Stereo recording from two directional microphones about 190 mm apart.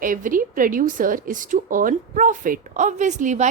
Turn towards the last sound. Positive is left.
turn(degrees=-40)  # may be behind; listen again after turning